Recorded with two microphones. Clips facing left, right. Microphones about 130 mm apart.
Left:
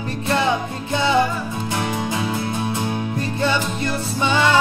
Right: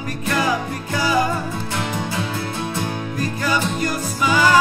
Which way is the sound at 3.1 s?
25° left (ahead or behind).